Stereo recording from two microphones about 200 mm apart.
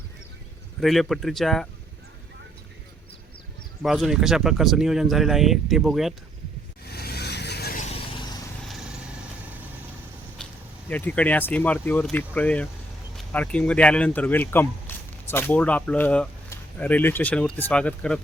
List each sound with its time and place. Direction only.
0.8 s speech: centre (ahead or behind)
3.8 s speech: centre (ahead or behind)
6.8 s vehicle: 50° left (ahead or behind)
7.8 s vehicle: 35° left (ahead or behind)
10.8 s speech: 10° left (ahead or behind)